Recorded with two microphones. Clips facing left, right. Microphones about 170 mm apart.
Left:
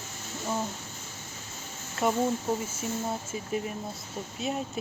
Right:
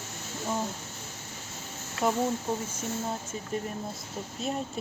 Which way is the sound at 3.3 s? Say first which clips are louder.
Left 1 dB; 5° left (ahead or behind).